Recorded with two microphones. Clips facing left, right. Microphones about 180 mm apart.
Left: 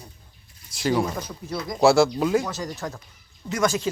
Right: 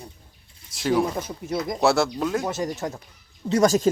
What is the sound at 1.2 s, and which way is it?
Speech, 25° right (ahead or behind).